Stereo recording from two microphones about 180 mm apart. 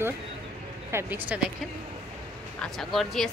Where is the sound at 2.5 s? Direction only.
Centre (ahead or behind).